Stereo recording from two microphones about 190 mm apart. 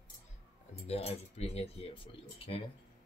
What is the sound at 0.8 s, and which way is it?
Speech, 35° left (ahead or behind).